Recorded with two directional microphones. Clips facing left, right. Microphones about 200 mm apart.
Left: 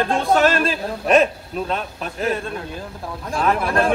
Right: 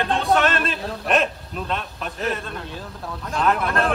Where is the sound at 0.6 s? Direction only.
Centre (ahead or behind).